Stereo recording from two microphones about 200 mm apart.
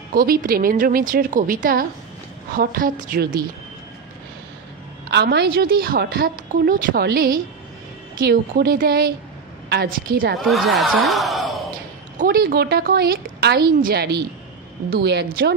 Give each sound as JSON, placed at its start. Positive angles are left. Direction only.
{"t": 0.1, "sound": "a woman's voice", "side_deg": -45}
{"t": 5.1, "sound": "a woman's voice", "side_deg": -55}
{"t": 10.4, "sound": "speech", "side_deg": 0}
{"t": 12.2, "sound": "a woman's voice", "side_deg": -45}